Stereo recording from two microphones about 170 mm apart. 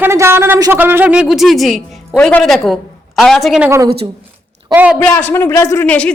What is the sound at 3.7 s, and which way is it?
Speech, 15° right (ahead or behind).